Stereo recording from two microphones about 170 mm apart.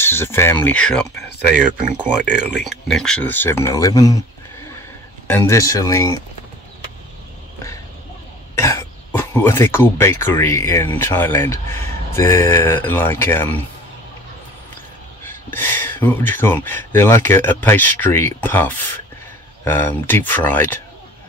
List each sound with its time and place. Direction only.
0.0 s speech: 15° left (ahead or behind)
2.0 s speech: 5° right (ahead or behind); by 4.2 s 20° left (ahead or behind)
5.3 s speech: 15° left (ahead or behind)
8.5 s speech: 15° left (ahead or behind)
15.2 s speech: 10° left (ahead or behind)